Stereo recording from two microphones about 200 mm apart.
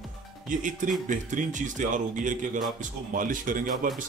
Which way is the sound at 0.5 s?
40° right (ahead or behind).